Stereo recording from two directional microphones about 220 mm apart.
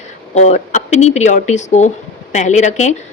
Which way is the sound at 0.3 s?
30° left (ahead or behind).